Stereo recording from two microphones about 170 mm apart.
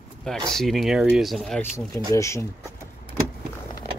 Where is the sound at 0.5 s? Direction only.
Centre (ahead or behind).